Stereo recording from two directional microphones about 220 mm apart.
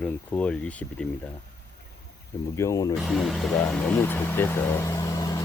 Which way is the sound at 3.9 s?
10° left (ahead or behind).